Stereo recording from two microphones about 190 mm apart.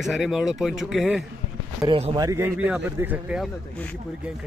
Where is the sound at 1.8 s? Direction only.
25° right (ahead or behind).